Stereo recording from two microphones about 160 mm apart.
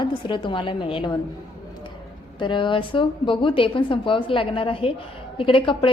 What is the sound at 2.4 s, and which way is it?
A woman's voice, 30° left (ahead or behind).